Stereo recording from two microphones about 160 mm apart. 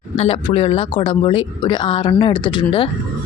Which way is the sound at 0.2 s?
35° left (ahead or behind).